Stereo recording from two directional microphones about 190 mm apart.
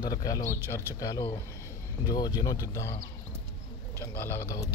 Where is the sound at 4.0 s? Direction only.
10° left (ahead or behind).